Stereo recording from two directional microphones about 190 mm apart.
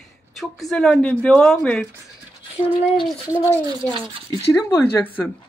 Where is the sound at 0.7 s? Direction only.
5° left (ahead or behind).